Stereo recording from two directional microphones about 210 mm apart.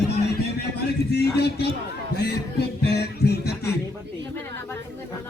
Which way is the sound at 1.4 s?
50° left (ahead or behind).